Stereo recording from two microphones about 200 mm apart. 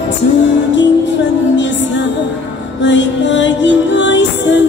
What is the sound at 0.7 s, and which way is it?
Music, 65° left (ahead or behind).